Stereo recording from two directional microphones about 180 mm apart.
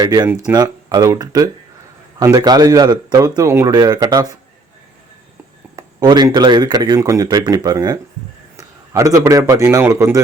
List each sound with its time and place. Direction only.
0.0 s speech: 20° right (ahead or behind)
5.7 s a man's voice: 20° right (ahead or behind)